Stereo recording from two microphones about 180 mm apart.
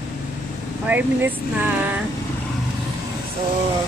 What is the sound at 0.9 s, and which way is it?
Speech, 10° right (ahead or behind).